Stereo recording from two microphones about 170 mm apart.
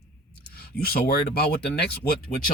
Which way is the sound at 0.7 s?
65° left (ahead or behind).